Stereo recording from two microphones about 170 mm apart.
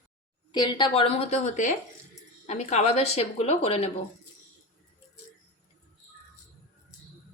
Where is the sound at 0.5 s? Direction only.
25° left (ahead or behind).